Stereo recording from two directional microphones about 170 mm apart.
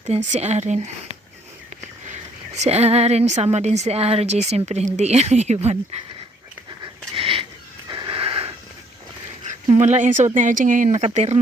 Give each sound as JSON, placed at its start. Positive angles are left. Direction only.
{"t": 0.0, "sound": "a woman's voice", "side_deg": -45}
{"t": 2.6, "sound": "a woman's voice", "side_deg": -40}
{"t": 7.1, "sound": "a sound", "side_deg": -35}
{"t": 7.9, "sound": "cat", "side_deg": -30}
{"t": 9.7, "sound": "speech", "side_deg": -45}